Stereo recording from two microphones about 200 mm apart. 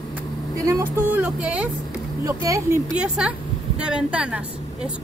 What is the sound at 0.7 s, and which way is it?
Speech, 10° right (ahead or behind).